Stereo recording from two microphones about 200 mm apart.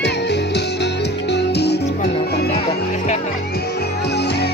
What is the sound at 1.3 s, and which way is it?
Music, 55° left (ahead or behind).